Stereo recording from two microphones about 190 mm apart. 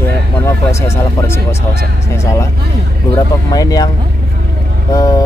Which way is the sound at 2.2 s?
15° left (ahead or behind).